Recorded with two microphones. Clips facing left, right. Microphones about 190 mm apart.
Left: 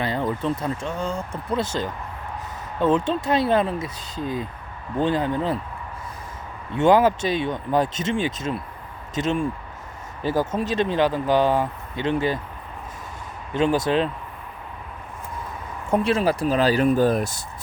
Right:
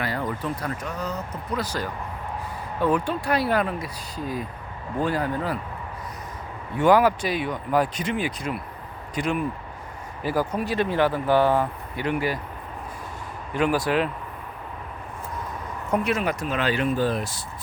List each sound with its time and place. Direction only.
0.0 s speech: 25° left (ahead or behind)
6.7 s speech: 25° left (ahead or behind)
13.6 s speech: 25° left (ahead or behind)
15.9 s speech: 30° left (ahead or behind); by 17.3 s 45° left (ahead or behind)